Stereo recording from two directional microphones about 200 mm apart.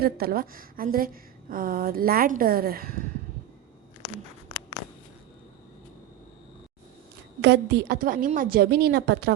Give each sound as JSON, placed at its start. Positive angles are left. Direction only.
{"t": 0.0, "sound": "a woman's voice", "side_deg": -50}
{"t": 7.4, "sound": "a woman's voice", "side_deg": -55}